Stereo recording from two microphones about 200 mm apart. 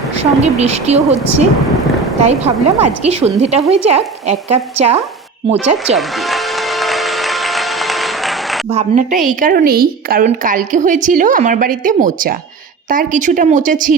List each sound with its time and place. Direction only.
0.2 s a woman's voice: 30° right (ahead or behind)
6.0 s music: centre (ahead or behind)
8.7 s a woman's voice: 35° right (ahead or behind)